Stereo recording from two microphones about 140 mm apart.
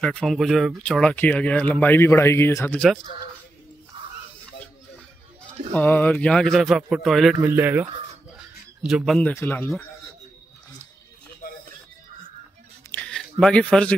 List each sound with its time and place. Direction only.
0.0 s speech: 5° left (ahead or behind)
5.7 s a man's voice: 10° left (ahead or behind)
7.3 s speech: 15° right (ahead or behind)
8.8 s a man's voice: centre (ahead or behind)
9.3 s speech: 15° left (ahead or behind)
11.4 s music: 90° left
12.9 s a sound: 5° left (ahead or behind)